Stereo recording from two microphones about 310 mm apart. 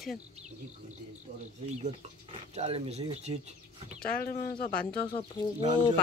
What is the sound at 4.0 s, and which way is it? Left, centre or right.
Speech, left.